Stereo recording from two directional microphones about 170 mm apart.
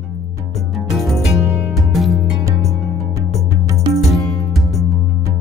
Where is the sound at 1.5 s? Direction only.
10° right (ahead or behind).